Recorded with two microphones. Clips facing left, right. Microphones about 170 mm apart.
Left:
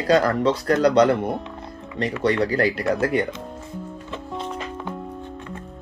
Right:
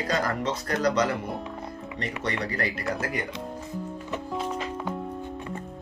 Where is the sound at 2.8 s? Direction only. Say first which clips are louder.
Left 8 dB; 65° left (ahead or behind).